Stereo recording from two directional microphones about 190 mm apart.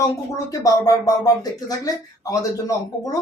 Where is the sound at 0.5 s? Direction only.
20° left (ahead or behind).